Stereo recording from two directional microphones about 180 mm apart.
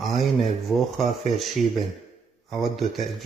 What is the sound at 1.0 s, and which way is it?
Speech, 40° right (ahead or behind).